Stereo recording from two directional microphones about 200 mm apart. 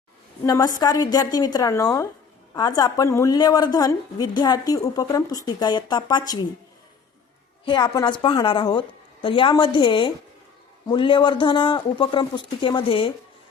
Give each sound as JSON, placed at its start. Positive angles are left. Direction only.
{"t": 0.4, "sound": "a woman's voice", "side_deg": 15}
{"t": 7.6, "sound": "a woman's voice", "side_deg": 20}